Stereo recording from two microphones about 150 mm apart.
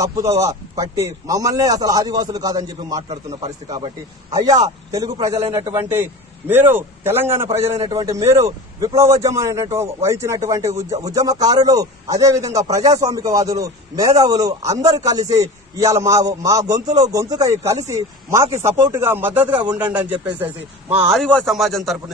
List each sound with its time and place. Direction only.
0.0 s a man's voice: 20° right (ahead or behind)
19.5 s a man's voice: 30° right (ahead or behind)
19.9 s a man's voice: 10° right (ahead or behind)
21.1 s speech: 5° left (ahead or behind)